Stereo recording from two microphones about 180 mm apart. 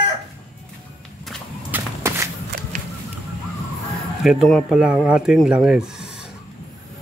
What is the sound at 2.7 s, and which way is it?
Fowl, 45° right (ahead or behind).